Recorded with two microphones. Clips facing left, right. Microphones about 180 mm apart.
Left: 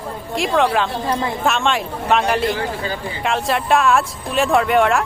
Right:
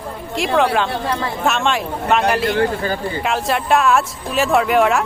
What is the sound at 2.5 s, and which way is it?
Speech, 50° right (ahead or behind).